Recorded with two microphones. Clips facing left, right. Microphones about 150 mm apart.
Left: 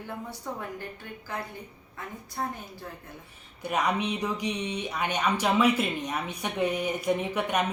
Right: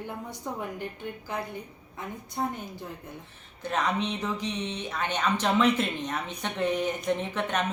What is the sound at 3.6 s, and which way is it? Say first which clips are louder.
Speech: left 1 dB; 10° left (ahead or behind).